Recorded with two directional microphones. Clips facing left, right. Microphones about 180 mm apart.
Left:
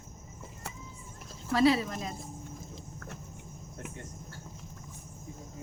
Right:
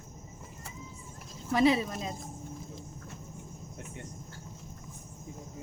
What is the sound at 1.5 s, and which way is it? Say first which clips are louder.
Speech: even; 20° right (ahead or behind).